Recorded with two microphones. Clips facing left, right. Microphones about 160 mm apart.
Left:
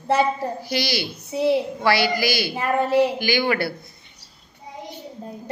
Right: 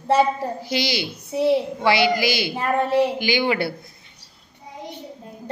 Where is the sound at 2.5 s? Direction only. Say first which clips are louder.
Left 1 dB; centre (ahead or behind).